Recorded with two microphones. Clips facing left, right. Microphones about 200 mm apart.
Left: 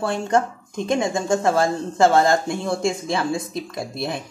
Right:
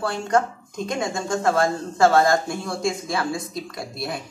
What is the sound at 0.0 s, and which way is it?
A woman's voice, 25° left (ahead or behind).